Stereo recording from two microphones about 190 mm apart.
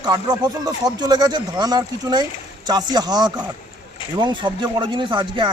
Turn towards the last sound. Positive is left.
turn(degrees=-25)  # may be behind; listen again after turning